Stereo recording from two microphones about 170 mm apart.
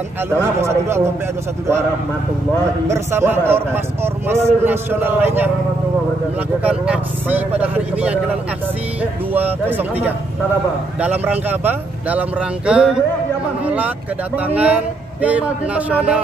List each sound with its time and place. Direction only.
0.4 s a man's voice: 15° right (ahead or behind)
2.9 s a man's voice: 15° right (ahead or behind)
6.6 s a man's voice: 5° right (ahead or behind)
9.3 s a man's voice: 10° right (ahead or behind)
11.0 s a man's voice: 10° right (ahead or behind)